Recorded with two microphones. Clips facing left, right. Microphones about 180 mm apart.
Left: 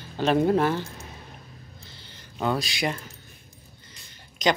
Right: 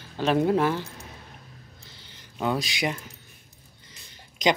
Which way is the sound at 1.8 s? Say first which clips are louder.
Left 2 dB; 15° right (ahead or behind).